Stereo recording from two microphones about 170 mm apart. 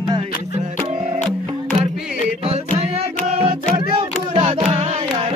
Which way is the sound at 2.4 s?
35° right (ahead or behind).